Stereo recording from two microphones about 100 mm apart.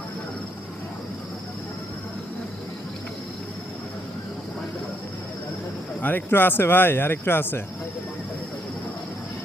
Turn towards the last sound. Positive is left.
turn(degrees=20)  # may be behind; listen again after turning